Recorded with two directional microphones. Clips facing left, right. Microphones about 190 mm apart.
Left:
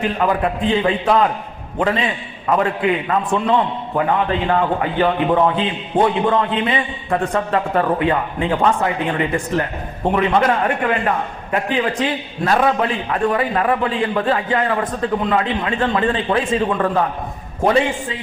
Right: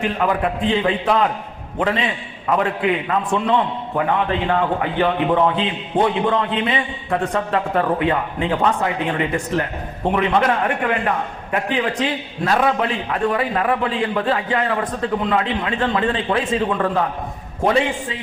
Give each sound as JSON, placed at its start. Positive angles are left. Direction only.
{"t": 0.0, "sound": "a man's voice", "side_deg": 35}
{"t": 10.0, "sound": "a man's voice", "side_deg": 40}